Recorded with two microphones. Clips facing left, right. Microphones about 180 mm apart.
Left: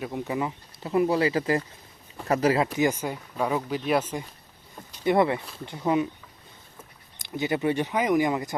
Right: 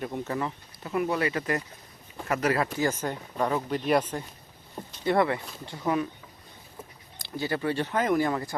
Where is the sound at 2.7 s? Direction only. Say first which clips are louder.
Left 3 dB; 15° left (ahead or behind).